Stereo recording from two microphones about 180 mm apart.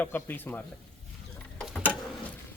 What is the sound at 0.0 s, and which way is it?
Speech, 10° left (ahead or behind).